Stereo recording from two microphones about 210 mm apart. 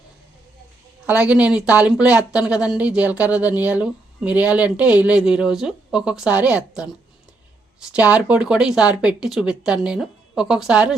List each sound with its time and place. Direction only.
1.0 s speech: 5° right (ahead or behind)